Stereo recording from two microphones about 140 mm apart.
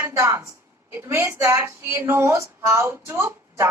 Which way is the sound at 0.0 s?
20° right (ahead or behind).